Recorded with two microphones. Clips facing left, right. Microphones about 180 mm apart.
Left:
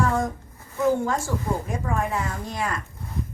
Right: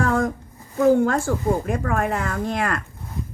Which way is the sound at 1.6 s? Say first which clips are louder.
Right 4 dB; 65° right (ahead or behind).